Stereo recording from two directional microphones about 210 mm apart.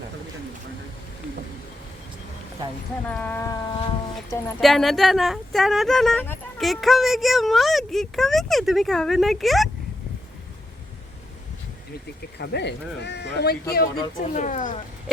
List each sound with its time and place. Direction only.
3.1 s speech: 10° left (ahead or behind)
4.6 s speech: centre (ahead or behind)
12.4 s speech: 55° left (ahead or behind)
14.2 s speech: 35° left (ahead or behind)